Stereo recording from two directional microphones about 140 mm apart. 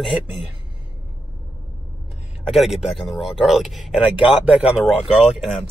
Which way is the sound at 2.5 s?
Centre (ahead or behind).